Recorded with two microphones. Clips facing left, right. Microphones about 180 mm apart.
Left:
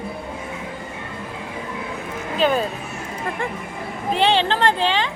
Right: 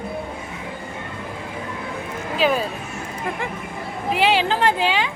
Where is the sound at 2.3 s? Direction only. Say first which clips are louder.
Left 1 dB; 5° right (ahead or behind).